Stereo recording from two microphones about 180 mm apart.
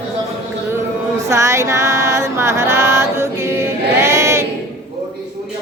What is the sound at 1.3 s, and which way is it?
Music, 15° right (ahead or behind).